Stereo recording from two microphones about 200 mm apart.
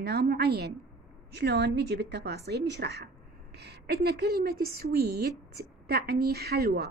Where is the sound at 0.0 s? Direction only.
55° right (ahead or behind).